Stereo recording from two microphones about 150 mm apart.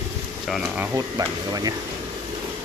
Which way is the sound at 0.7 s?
20° right (ahead or behind).